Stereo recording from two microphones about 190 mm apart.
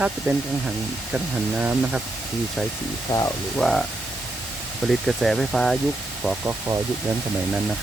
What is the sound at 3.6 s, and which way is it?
Speech, centre (ahead or behind).